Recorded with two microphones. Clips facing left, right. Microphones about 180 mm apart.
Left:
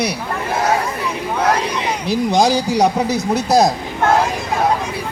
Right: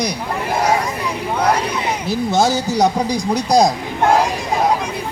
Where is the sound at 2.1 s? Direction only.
15° left (ahead or behind).